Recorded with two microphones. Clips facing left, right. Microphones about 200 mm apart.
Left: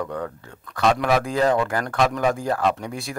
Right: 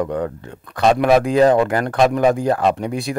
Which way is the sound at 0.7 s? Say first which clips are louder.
Right 6 dB; 20° right (ahead or behind).